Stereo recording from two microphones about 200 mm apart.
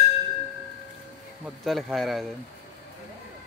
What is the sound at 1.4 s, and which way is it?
Speech, centre (ahead or behind).